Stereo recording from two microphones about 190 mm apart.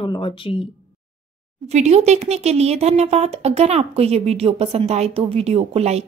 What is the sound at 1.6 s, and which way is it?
Speech, 35° right (ahead or behind).